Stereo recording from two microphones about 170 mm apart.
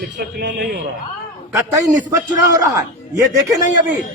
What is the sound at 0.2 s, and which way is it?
Speech, 70° right (ahead or behind).